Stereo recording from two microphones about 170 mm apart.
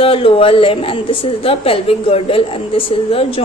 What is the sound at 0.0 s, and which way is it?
A woman's voice, 35° left (ahead or behind).